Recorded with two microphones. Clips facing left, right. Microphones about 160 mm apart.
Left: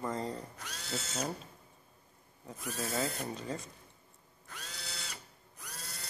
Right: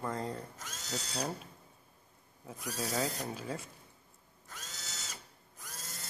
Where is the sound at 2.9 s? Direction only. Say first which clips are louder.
Even; centre (ahead or behind).